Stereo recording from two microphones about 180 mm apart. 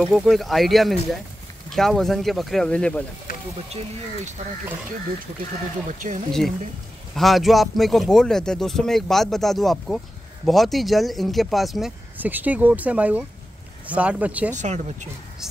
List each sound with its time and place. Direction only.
0.0 s speech: centre (ahead or behind)
5.9 s speech: 45° right (ahead or behind)
7.2 s speech: centre (ahead or behind)
14.5 s speech: 40° right (ahead or behind)